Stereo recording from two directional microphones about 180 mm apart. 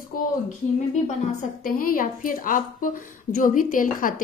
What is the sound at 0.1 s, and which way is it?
Speech, 50° left (ahead or behind).